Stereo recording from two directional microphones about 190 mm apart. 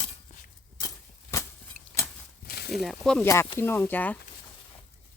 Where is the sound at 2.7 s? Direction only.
Centre (ahead or behind).